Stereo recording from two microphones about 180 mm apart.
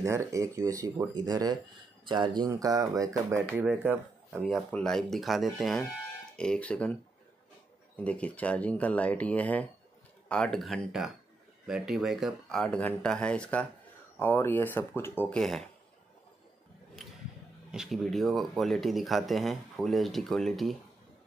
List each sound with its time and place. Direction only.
0.0 s speech: 15° right (ahead or behind)
4.4 s speech: 5° left (ahead or behind)
8.0 s speech: 10° left (ahead or behind)
17.6 s speech: centre (ahead or behind)